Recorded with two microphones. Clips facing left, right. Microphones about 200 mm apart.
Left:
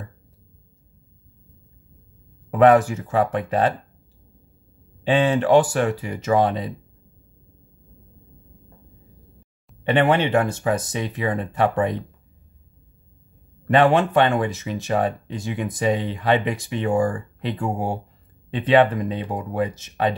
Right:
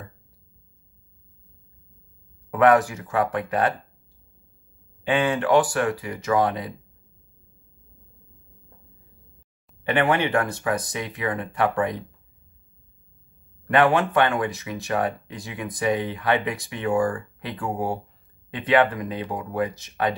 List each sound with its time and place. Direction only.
2.5 s speech: 25° left (ahead or behind)
5.0 s speech: 25° left (ahead or behind)
9.8 s speech: 25° left (ahead or behind)
13.7 s speech: 25° left (ahead or behind)